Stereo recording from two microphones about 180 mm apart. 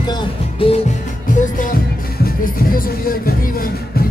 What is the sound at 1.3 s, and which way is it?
Music, 45° left (ahead or behind).